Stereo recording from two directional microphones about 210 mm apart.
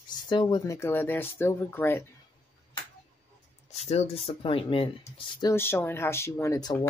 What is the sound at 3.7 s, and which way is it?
Speech, 30° left (ahead or behind).